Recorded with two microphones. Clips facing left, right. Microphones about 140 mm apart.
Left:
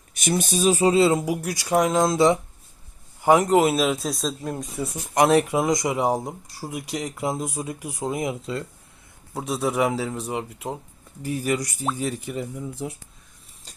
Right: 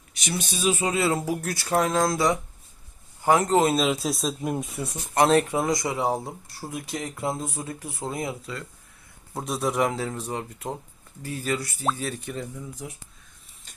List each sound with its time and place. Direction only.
0.1 s speech: 50° left (ahead or behind); by 2.4 s 25° left (ahead or behind)
3.2 s a man's voice: 15° left (ahead or behind); by 4.6 s 15° right (ahead or behind)
5.1 s speech: 10° left (ahead or behind)
9.3 s speech: 5° left (ahead or behind)
12.7 s speech: 25° left (ahead or behind)